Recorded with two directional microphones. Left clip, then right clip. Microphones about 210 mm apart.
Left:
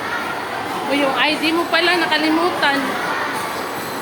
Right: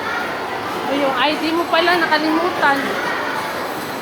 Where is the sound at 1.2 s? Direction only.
10° left (ahead or behind).